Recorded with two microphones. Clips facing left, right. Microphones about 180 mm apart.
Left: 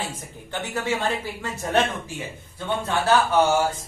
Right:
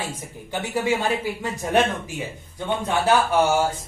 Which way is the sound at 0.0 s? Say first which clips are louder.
Right 1 dB; 10° right (ahead or behind).